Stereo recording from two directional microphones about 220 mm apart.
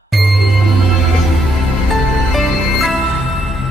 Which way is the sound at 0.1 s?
Centre (ahead or behind).